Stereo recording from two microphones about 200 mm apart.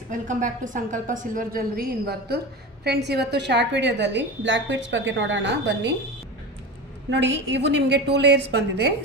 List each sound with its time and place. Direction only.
0.1 s a woman's voice: 40° right (ahead or behind); by 5.9 s 60° right (ahead or behind)
7.1 s a woman's voice: 60° right (ahead or behind)